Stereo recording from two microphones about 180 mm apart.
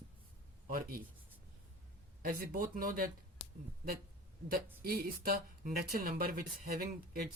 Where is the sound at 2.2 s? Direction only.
50° right (ahead or behind).